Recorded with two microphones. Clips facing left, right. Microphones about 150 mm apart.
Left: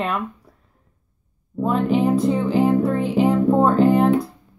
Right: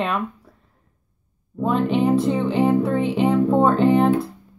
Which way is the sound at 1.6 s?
Centre (ahead or behind).